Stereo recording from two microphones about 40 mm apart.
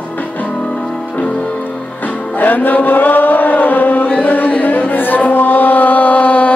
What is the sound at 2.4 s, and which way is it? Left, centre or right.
Chant, left.